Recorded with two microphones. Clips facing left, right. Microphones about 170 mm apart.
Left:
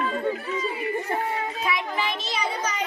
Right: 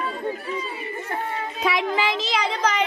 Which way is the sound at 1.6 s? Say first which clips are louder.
Right 8 dB; 90° right.